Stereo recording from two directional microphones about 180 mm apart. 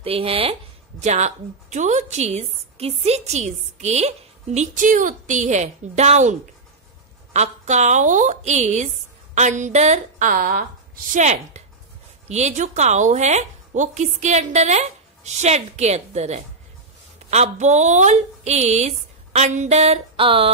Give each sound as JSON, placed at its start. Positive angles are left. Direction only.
{"t": 0.0, "sound": "speech", "side_deg": -30}
{"t": 7.3, "sound": "speech", "side_deg": -40}
{"t": 11.1, "sound": "speech", "side_deg": -40}